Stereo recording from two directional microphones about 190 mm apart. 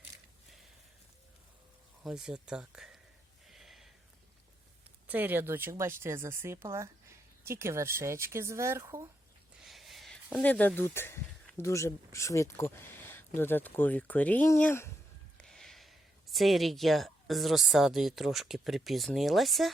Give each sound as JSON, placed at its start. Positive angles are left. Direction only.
{"t": 2.0, "sound": "speech", "side_deg": -5}
{"t": 3.4, "sound": "gasp", "side_deg": 0}
{"t": 5.0, "sound": "speech", "side_deg": -10}
{"t": 9.6, "sound": "speech", "side_deg": 0}